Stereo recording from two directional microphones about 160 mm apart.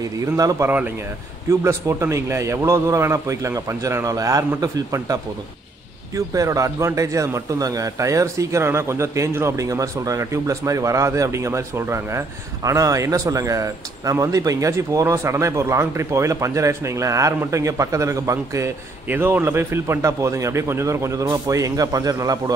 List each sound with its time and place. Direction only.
0.0 s a man's voice: 25° right (ahead or behind)
0.7 s a man's voice: 10° right (ahead or behind)